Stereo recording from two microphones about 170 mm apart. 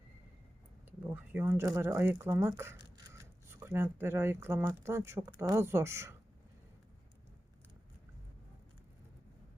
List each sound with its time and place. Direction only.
0.9 s speech: 10° right (ahead or behind)